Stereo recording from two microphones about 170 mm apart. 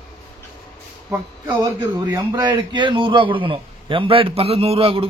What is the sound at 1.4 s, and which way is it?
A man's voice, 30° right (ahead or behind).